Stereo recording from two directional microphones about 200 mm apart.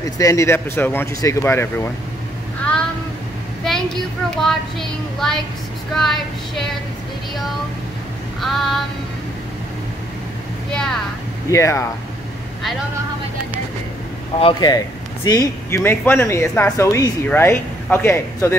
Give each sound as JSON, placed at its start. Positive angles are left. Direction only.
{"t": 0.0, "sound": "speech", "side_deg": 15}
{"t": 3.6, "sound": "a child's voice", "side_deg": 0}
{"t": 8.4, "sound": "speech", "side_deg": 0}
{"t": 10.7, "sound": "speech", "side_deg": 5}
{"t": 11.5, "sound": "speech", "side_deg": 15}
{"t": 14.4, "sound": "speech", "side_deg": 20}